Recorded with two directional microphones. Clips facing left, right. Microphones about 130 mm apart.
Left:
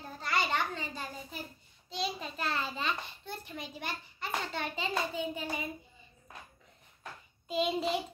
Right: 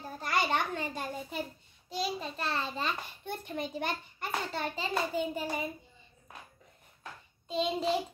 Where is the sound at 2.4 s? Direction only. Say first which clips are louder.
Left 1 dB; 30° right (ahead or behind).